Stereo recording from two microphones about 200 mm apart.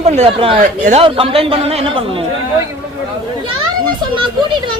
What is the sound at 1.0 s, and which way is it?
Speech, 25° right (ahead or behind).